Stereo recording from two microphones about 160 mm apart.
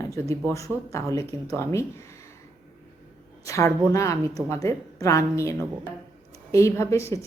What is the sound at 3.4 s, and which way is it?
A woman's voice, 20° left (ahead or behind).